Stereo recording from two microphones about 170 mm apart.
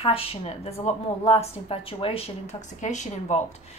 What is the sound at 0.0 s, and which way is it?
A woman's voice, 35° left (ahead or behind).